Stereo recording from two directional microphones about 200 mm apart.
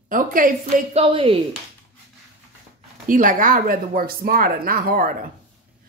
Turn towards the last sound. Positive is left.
turn(degrees=-45)  # may be behind; listen again after turning